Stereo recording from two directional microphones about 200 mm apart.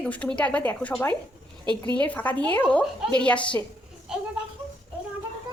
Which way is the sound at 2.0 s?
5° left (ahead or behind).